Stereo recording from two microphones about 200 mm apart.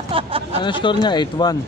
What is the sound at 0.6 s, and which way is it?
Speech, 25° left (ahead or behind).